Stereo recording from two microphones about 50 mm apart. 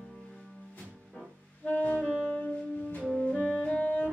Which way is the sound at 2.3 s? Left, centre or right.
Left.